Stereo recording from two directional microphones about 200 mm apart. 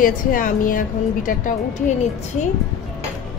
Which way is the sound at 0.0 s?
45° left (ahead or behind).